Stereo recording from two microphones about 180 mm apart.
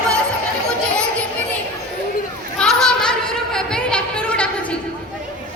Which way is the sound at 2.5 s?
5° left (ahead or behind).